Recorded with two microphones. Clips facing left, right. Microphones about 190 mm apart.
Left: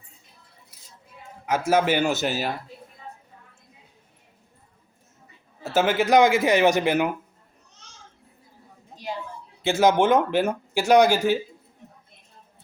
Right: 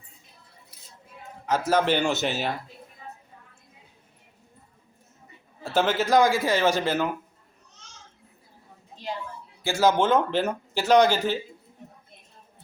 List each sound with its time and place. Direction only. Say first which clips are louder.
1.5 s speech: left 1 dB; 10° left (ahead or behind)
5.6 s speech: left 2 dB; 10° left (ahead or behind)
9.6 s speech: left 3 dB; 20° left (ahead or behind)